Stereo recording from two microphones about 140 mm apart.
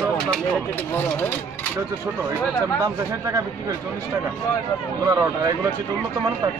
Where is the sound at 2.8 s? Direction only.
25° right (ahead or behind).